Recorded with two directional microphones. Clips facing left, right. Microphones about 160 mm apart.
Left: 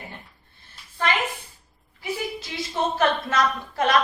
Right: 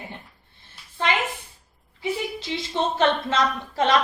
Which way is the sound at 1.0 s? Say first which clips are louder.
Even; 20° right (ahead or behind).